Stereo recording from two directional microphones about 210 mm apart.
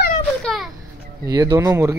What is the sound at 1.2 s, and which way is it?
Speech, 15° right (ahead or behind).